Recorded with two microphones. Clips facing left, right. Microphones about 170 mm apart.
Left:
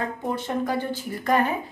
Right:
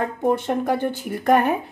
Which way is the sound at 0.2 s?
55° right (ahead or behind).